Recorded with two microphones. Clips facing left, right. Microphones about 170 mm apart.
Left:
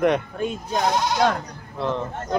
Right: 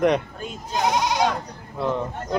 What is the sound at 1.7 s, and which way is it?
Speech, 5° right (ahead or behind).